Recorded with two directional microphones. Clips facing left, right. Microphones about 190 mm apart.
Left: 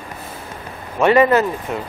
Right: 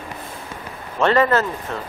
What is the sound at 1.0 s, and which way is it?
Speech, 15° left (ahead or behind).